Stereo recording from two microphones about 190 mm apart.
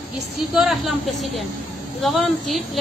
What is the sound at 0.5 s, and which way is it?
Speech, centre (ahead or behind).